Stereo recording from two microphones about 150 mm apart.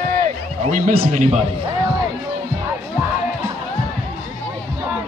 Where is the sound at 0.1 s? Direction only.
60° right (ahead or behind).